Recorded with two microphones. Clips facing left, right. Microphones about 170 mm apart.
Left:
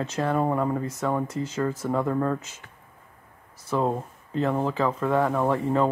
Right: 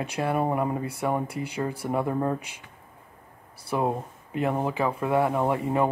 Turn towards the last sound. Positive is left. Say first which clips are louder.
# left 1 dB
turn(degrees=-15)  # may be behind; listen again after turning